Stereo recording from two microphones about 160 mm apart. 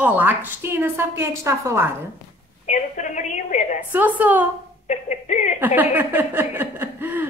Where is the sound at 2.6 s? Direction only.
50° left (ahead or behind).